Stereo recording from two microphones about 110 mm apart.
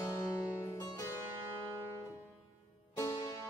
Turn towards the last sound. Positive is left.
turn(degrees=30)  # may be behind; listen again after turning